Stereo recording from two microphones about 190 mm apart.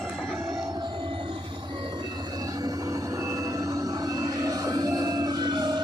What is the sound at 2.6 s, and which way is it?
Train, 15° right (ahead or behind).